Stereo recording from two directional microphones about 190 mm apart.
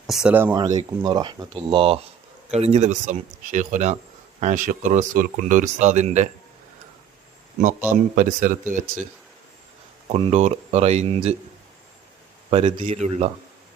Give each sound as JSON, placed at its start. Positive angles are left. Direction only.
{"t": 0.1, "sound": "speech", "side_deg": -5}
{"t": 0.5, "sound": "speech", "side_deg": -20}
{"t": 8.1, "sound": "speech", "side_deg": -45}
{"t": 10.1, "sound": "speech", "side_deg": -35}
{"t": 12.5, "sound": "speech", "side_deg": -30}